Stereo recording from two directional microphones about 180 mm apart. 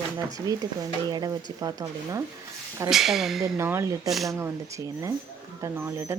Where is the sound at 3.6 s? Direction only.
15° right (ahead or behind).